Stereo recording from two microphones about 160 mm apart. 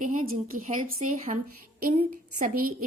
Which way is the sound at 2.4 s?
60° right (ahead or behind).